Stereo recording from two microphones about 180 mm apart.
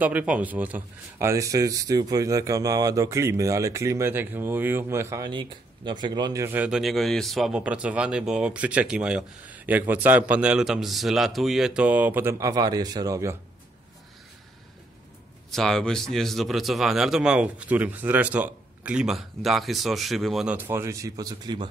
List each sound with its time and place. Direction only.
0.0 s speech: 10° right (ahead or behind)
15.5 s speech: centre (ahead or behind); by 21.6 s 25° right (ahead or behind)